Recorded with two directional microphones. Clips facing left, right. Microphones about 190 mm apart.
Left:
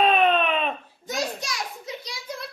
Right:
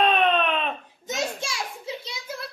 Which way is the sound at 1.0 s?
25° right (ahead or behind).